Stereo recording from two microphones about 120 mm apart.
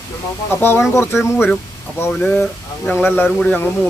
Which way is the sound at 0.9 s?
20° left (ahead or behind).